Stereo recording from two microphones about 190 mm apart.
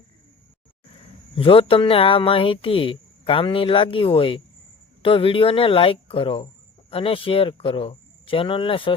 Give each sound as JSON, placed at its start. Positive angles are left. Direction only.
{"t": 0.9, "sound": "speech", "side_deg": 30}